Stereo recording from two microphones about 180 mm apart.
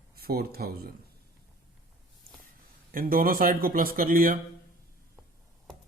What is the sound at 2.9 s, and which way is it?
Speech, 50° right (ahead or behind).